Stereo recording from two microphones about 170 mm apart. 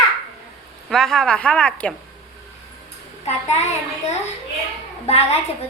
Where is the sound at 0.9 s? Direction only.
5° left (ahead or behind).